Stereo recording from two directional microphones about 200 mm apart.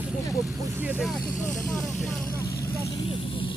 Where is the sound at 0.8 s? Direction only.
10° right (ahead or behind).